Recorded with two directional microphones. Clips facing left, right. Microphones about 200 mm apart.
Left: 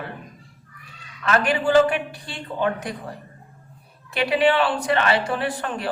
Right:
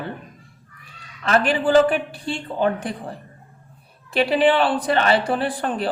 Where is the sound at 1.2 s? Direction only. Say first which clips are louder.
Right 2 dB; 30° right (ahead or behind).